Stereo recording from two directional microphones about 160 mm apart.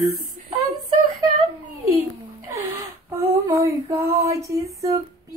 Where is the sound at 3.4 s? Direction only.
20° right (ahead or behind).